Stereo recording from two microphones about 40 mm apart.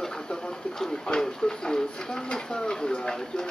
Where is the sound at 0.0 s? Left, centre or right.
Centre.